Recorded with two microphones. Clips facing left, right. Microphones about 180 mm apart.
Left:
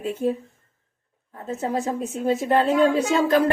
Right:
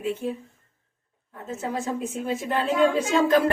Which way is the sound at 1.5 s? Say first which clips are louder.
Left 4 dB; 35° left (ahead or behind).